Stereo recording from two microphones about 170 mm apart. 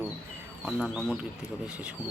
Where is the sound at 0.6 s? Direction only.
5° right (ahead or behind).